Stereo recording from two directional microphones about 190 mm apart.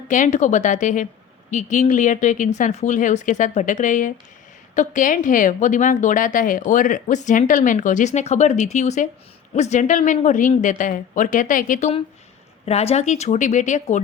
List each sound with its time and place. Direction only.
0.1 s a woman's voice: 40° left (ahead or behind)
12.6 s a woman's voice: 35° left (ahead or behind)